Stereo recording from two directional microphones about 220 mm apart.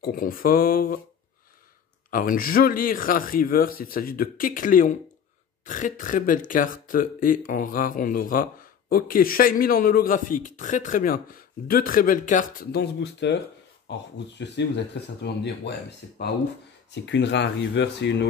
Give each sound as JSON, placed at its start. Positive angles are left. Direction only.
{"t": 0.0, "sound": "speech", "side_deg": 40}
{"t": 2.0, "sound": "speech", "side_deg": 40}
{"t": 16.9, "sound": "speech", "side_deg": 55}